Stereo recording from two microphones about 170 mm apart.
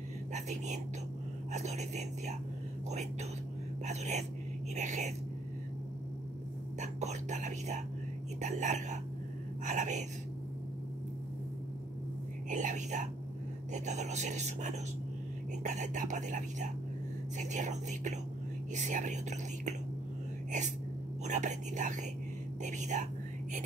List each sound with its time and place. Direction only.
0.3 s speech: 45° right (ahead or behind)
6.8 s speech: 45° right (ahead or behind)
12.4 s speech: 45° right (ahead or behind)
21.3 s speech: 45° right (ahead or behind)